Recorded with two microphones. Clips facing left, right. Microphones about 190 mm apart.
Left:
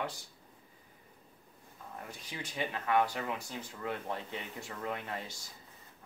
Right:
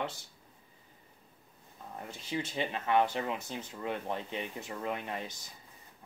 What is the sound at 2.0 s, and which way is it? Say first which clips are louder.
Speech: right 7 dB; 25° right (ahead or behind).